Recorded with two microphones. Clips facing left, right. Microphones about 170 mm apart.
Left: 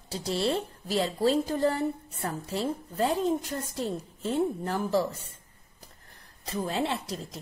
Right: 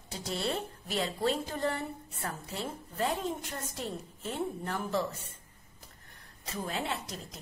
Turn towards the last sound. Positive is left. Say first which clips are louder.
# left 4 dB
turn(degrees=35)  # may be behind; listen again after turning